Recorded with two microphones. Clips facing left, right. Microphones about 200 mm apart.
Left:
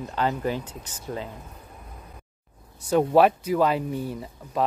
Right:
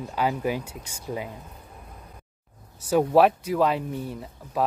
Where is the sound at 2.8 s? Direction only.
5° right (ahead or behind).